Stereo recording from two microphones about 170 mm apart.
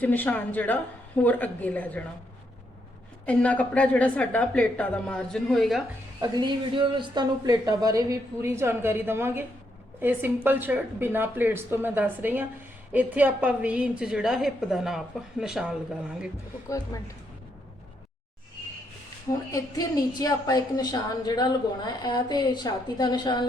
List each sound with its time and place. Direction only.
0.0 s speech: 10° left (ahead or behind)
3.2 s speech: 10° left (ahead or behind)
6.1 s a woman's voice: 25° right (ahead or behind); by 15.7 s 5° right (ahead or behind)
16.6 s a woman's voice: 20° left (ahead or behind)
19.5 s a woman's voice: 20° left (ahead or behind)